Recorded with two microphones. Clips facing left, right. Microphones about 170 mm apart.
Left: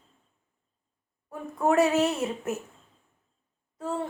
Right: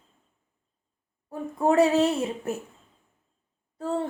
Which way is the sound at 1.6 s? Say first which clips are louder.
Right 2 dB; 30° right (ahead or behind).